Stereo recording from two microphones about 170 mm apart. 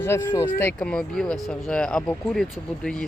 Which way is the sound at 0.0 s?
15° left (ahead or behind).